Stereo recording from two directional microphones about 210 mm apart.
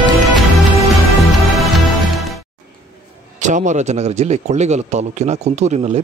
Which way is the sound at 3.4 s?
35° right (ahead or behind).